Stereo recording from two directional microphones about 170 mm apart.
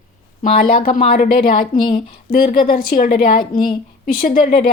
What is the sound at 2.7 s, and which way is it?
A woman's voice, 50° left (ahead or behind).